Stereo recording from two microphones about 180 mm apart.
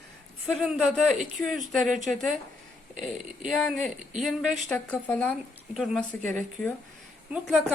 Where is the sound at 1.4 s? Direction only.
5° left (ahead or behind).